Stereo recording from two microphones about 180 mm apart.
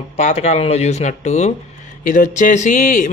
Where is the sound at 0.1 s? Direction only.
40° left (ahead or behind).